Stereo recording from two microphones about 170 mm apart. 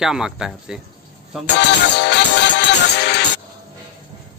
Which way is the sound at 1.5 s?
90° left.